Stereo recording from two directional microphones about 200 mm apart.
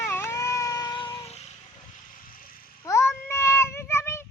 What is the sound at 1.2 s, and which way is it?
Vehicle, 30° left (ahead or behind).